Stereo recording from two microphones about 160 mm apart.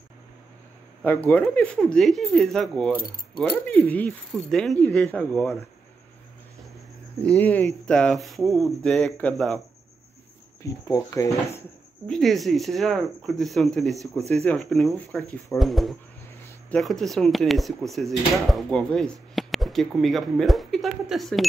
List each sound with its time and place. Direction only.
1.0 s speech: 10° left (ahead or behind)
7.2 s speech: 10° left (ahead or behind)
10.6 s speech: 20° left (ahead or behind)
12.1 s speech: centre (ahead or behind)